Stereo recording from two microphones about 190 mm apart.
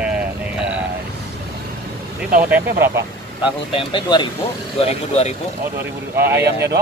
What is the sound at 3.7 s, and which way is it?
Speech, 25° left (ahead or behind).